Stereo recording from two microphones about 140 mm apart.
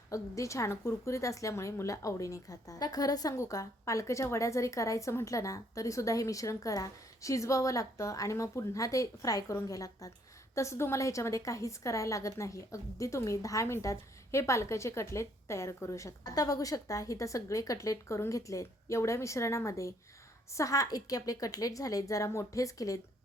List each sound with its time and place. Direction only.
0.1 s a woman's voice: 20° left (ahead or behind)